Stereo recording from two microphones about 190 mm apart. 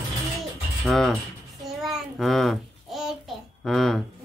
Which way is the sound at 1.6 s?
Centre (ahead or behind).